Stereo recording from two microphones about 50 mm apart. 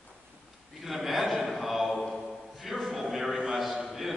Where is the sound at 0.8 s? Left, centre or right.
Centre.